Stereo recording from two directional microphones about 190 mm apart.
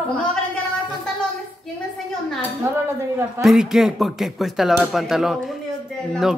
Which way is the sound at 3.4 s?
Centre (ahead or behind).